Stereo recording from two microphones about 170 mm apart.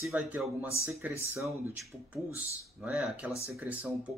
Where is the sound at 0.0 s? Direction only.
Centre (ahead or behind).